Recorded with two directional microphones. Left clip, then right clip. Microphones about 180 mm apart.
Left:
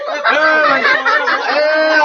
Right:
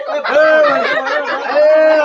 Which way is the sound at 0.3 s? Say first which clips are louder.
Right 4 dB; 35° right (ahead or behind).